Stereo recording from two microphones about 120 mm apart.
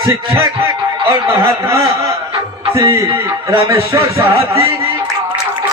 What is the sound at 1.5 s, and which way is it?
Speech, 25° right (ahead or behind).